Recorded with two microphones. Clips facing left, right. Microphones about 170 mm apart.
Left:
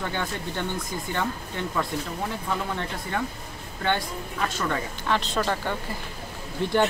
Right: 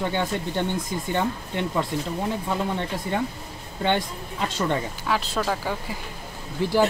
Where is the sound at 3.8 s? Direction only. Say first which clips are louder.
Right 3 dB; 20° right (ahead or behind).